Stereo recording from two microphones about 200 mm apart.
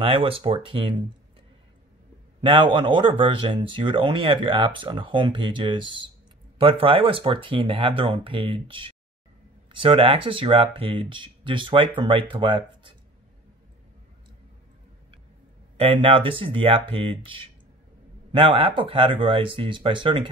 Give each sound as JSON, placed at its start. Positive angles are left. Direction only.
{"t": 0.0, "sound": "speech", "side_deg": -25}
{"t": 2.4, "sound": "speech", "side_deg": -25}
{"t": 15.8, "sound": "speech", "side_deg": -25}